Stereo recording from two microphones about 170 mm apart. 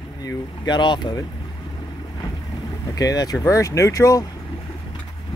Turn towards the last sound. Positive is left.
turn(degrees=20)  # may be behind; listen again after turning